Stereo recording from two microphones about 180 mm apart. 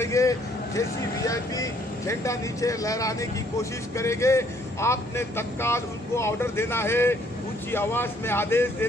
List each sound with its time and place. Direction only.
0.0 s a man's voice: 15° left (ahead or behind)